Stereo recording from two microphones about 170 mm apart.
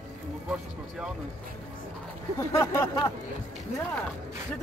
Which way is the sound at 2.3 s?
15° left (ahead or behind).